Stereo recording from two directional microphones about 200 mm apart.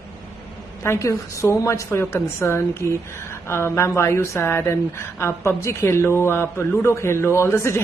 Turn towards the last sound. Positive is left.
turn(degrees=15)  # may be behind; listen again after turning